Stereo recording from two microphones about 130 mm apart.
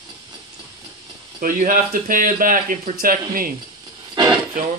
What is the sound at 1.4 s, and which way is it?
Speech, 90° right.